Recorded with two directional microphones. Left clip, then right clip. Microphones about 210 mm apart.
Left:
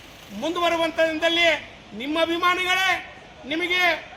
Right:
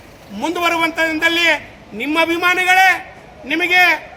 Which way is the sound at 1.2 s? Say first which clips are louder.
Right 7 dB; 25° right (ahead or behind).